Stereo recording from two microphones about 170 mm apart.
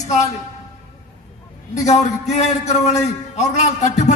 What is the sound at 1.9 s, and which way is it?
A man's voice, 40° left (ahead or behind).